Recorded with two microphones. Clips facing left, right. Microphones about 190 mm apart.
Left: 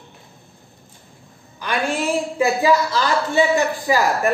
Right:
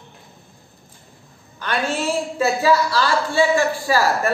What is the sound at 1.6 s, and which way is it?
A woman's voice, 15° left (ahead or behind).